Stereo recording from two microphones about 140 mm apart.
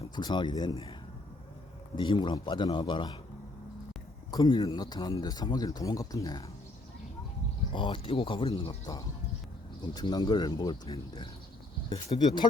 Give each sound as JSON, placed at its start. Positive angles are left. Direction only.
{"t": 0.2, "sound": "speech", "side_deg": 30}
{"t": 2.0, "sound": "speech", "side_deg": 35}
{"t": 4.3, "sound": "speech", "side_deg": 30}
{"t": 7.7, "sound": "speech", "side_deg": 35}
{"t": 9.9, "sound": "speech", "side_deg": 30}